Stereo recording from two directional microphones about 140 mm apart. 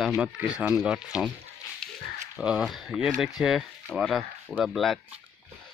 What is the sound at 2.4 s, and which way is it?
Speech, 5° right (ahead or behind).